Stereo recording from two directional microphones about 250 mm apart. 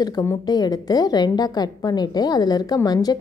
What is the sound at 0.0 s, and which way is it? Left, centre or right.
A woman's voice, centre.